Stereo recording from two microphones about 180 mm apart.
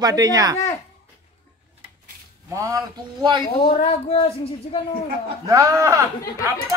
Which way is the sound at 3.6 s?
35° left (ahead or behind).